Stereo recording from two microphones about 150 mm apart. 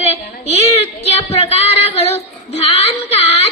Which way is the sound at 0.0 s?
45° left (ahead or behind).